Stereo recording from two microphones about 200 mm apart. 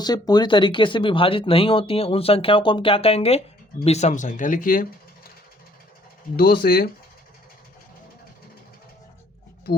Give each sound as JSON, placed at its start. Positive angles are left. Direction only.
{"t": 0.0, "sound": "speech", "side_deg": 20}
{"t": 6.3, "sound": "speech", "side_deg": 50}